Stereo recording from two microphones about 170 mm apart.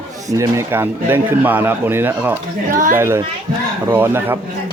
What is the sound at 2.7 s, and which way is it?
Speech, 50° right (ahead or behind).